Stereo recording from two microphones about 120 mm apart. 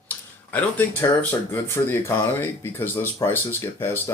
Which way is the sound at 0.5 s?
15° left (ahead or behind).